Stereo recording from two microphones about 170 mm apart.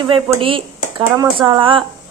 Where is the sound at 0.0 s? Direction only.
30° right (ahead or behind).